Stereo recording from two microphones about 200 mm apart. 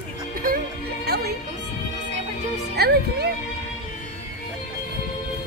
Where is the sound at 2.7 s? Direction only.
55° right (ahead or behind).